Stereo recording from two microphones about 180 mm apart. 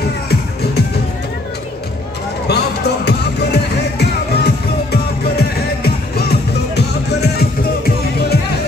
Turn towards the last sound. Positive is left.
turn(degrees=65)  # may be behind; listen again after turning